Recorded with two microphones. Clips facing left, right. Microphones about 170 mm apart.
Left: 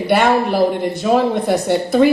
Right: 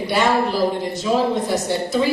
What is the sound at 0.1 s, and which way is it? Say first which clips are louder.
A woman's voice: left 4 dB; 55° left (ahead or behind).